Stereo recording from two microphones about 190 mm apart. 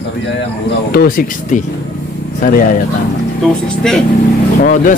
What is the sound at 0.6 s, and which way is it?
Speech, 50° left (ahead or behind).